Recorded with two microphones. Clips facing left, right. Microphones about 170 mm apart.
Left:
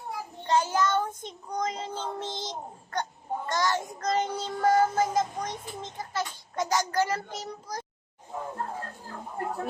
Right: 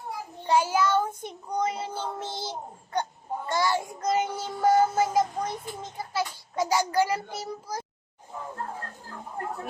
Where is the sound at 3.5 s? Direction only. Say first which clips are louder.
Right 2 dB; 10° right (ahead or behind).